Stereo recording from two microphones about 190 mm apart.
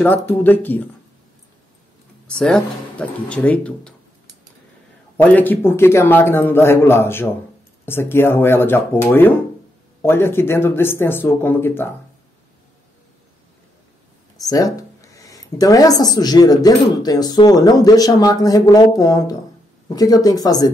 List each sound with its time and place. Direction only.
0.0 s a man's voice: 10° left (ahead or behind)
2.2 s speech: 5° left (ahead or behind)
5.1 s a man's voice: 10° left (ahead or behind)
14.3 s speech: 20° left (ahead or behind)